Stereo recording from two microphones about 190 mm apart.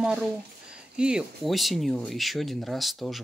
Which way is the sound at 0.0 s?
5° right (ahead or behind).